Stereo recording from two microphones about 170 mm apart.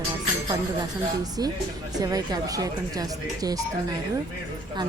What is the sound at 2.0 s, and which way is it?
Speech, 20° right (ahead or behind).